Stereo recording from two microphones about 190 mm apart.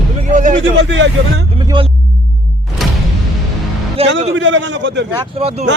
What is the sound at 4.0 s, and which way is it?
Speech, 30° right (ahead or behind).